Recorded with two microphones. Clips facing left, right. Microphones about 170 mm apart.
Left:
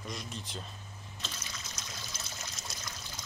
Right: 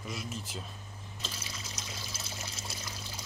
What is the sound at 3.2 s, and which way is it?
Water, 30° right (ahead or behind).